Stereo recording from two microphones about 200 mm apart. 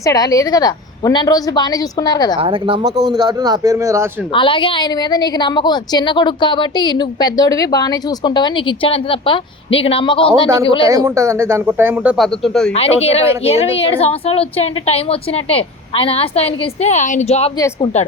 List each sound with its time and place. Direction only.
0.0 s a woman's voice: 15° left (ahead or behind)
2.4 s a man's voice: 25° right (ahead or behind)
4.3 s a woman's voice: 25° left (ahead or behind)
10.8 s speech: 15° right (ahead or behind); by 12.7 s centre (ahead or behind)
12.7 s a woman's voice: 30° left (ahead or behind)